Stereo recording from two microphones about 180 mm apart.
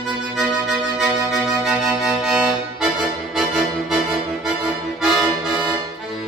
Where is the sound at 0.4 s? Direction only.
Centre (ahead or behind).